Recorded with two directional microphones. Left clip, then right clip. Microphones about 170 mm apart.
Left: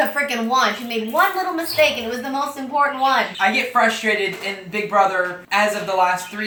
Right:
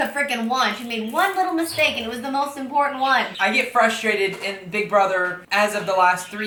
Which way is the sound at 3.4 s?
10° right (ahead or behind).